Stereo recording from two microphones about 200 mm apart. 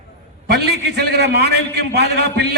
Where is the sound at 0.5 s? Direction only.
55° right (ahead or behind).